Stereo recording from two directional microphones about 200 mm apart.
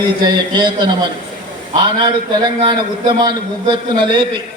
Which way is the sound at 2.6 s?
25° right (ahead or behind).